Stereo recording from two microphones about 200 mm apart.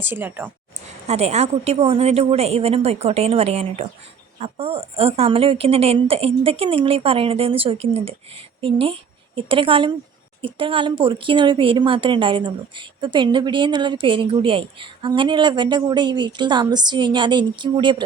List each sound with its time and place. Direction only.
0.0 s speech: 10° right (ahead or behind)
1.0 s a woman's voice: 35° right (ahead or behind)